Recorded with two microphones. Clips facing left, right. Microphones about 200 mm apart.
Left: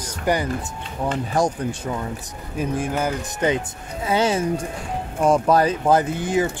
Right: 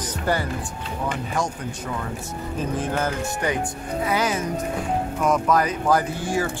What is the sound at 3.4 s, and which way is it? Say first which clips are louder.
Speech: left 6 dB; 20° left (ahead or behind).